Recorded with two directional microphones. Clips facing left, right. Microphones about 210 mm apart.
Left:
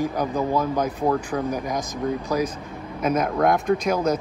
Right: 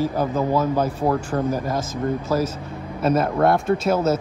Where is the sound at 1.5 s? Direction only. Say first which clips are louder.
Right 3 dB; 15° left (ahead or behind).